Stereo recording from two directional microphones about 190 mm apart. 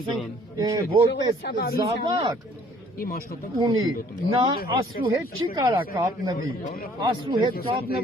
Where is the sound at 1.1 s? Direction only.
55° left (ahead or behind).